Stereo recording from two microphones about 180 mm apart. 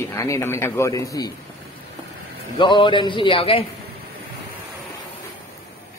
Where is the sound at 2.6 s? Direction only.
25° left (ahead or behind).